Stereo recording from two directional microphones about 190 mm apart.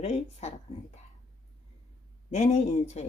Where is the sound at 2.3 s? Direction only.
35° left (ahead or behind).